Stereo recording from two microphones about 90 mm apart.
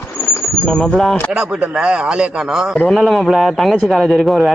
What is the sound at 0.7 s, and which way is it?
Speech, 5° left (ahead or behind).